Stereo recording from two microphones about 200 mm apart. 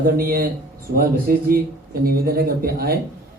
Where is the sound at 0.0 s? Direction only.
45° right (ahead or behind).